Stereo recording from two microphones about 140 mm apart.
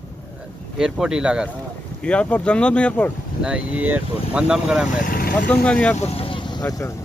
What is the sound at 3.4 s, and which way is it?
Speech, 5° right (ahead or behind).